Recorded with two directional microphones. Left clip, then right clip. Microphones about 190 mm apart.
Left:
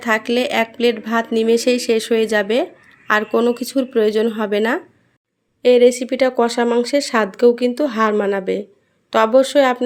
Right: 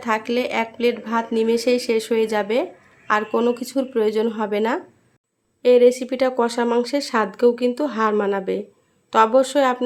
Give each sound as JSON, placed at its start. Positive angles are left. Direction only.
{"t": 0.0, "sound": "speech", "side_deg": 20}